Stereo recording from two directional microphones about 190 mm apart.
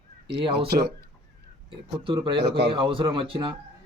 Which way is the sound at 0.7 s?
55° right (ahead or behind).